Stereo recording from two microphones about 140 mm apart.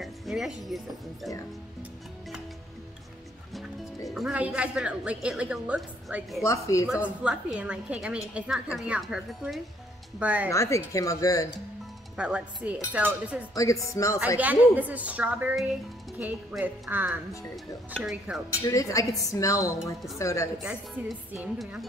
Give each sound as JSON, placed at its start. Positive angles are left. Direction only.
{"t": 0.0, "sound": "speech", "side_deg": 0}
{"t": 4.1, "sound": "a woman's voice", "side_deg": -5}
{"t": 6.4, "sound": "a woman's voice", "side_deg": 20}
{"t": 7.2, "sound": "speech", "side_deg": -10}
{"t": 10.5, "sound": "a woman's voice", "side_deg": 20}
{"t": 12.2, "sound": "speech", "side_deg": -5}
{"t": 13.6, "sound": "a woman's voice", "side_deg": 25}
{"t": 14.4, "sound": "speech", "side_deg": -10}
{"t": 18.5, "sound": "a woman's voice", "side_deg": 25}
{"t": 20.5, "sound": "a woman's voice", "side_deg": -5}